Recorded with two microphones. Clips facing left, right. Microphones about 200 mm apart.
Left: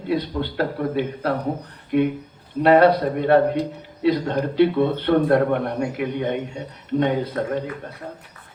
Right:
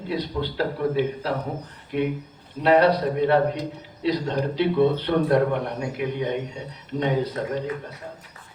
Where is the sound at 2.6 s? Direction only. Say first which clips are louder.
Left 3 dB; 55° left (ahead or behind).